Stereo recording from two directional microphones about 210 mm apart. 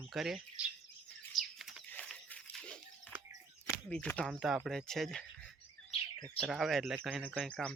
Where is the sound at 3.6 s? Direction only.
10° left (ahead or behind).